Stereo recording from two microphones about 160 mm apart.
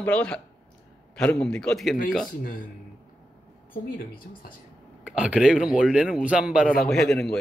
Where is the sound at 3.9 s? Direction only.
65° left (ahead or behind).